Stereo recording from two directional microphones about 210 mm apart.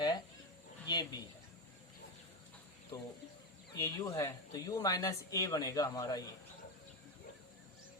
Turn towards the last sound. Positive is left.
turn(degrees=15)  # may be behind; listen again after turning